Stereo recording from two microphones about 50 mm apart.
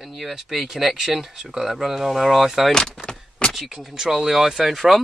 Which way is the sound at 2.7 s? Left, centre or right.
Centre.